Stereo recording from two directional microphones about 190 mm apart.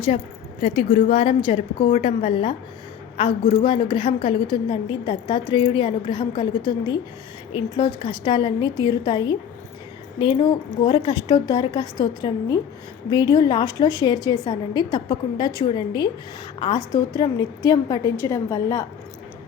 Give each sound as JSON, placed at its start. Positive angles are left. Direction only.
{"t": 0.6, "sound": "a woman's voice", "side_deg": 30}